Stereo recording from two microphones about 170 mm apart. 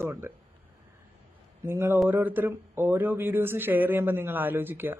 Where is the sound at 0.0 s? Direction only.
15° right (ahead or behind).